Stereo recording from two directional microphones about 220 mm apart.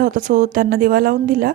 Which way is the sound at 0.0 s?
35° right (ahead or behind).